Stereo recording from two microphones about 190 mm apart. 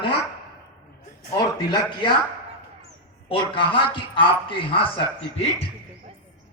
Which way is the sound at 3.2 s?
25° left (ahead or behind).